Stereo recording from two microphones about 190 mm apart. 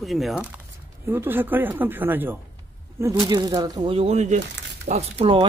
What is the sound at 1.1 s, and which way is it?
Speech, 10° right (ahead or behind).